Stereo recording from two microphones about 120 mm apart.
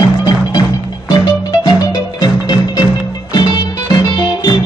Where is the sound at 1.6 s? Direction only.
35° left (ahead or behind).